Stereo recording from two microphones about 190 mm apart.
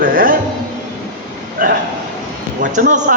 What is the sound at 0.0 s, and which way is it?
Speech, 50° right (ahead or behind).